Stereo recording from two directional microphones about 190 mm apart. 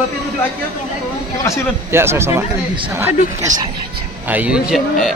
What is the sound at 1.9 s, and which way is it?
Speech, 15° right (ahead or behind).